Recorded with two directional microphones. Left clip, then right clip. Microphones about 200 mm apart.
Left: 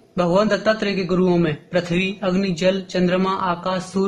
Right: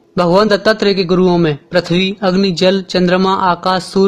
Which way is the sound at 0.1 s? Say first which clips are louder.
Right 7 dB; 40° right (ahead or behind).